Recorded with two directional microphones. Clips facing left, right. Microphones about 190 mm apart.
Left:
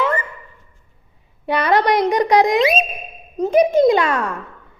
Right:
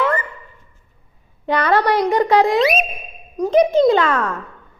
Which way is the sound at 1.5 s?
10° left (ahead or behind).